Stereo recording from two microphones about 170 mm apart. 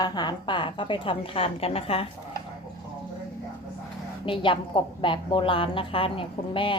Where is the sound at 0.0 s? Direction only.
25° left (ahead or behind).